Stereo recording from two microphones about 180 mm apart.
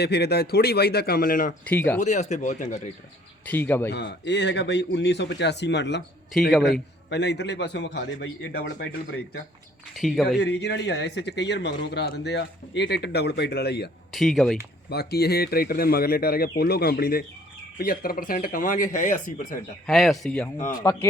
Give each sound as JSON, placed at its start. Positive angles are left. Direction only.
{"t": 0.0, "sound": "speech", "side_deg": 65}
{"t": 1.7, "sound": "a man's voice", "side_deg": 10}
{"t": 2.0, "sound": "speech", "side_deg": 40}
{"t": 3.4, "sound": "a man's voice", "side_deg": 10}
{"t": 3.9, "sound": "a man's voice", "side_deg": 75}
{"t": 6.5, "sound": "speech", "side_deg": 0}
{"t": 7.1, "sound": "a man's voice", "side_deg": 70}
{"t": 9.9, "sound": "speech", "side_deg": 0}
{"t": 10.2, "sound": "a man's voice", "side_deg": 70}
{"t": 14.1, "sound": "speech", "side_deg": 0}
{"t": 14.8, "sound": "speech", "side_deg": 60}
{"t": 19.9, "sound": "speech", "side_deg": 0}
{"t": 20.7, "sound": "a man's voice", "side_deg": 15}